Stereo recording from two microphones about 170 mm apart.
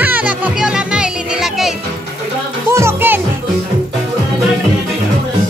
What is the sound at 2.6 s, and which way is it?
Music, 15° right (ahead or behind).